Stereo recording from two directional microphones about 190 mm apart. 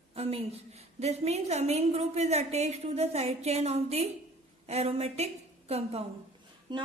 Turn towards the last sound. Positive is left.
turn(degrees=-25)  # may be behind; listen again after turning